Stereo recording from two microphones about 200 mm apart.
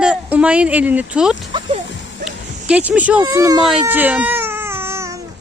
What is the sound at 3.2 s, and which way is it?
Speech, 20° right (ahead or behind).